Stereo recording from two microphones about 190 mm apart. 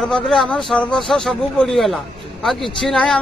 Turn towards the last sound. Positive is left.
turn(degrees=5)  # may be behind; listen again after turning